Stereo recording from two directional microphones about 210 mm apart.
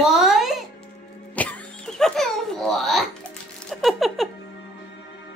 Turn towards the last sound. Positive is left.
turn(degrees=0)  # may be behind; listen again after turning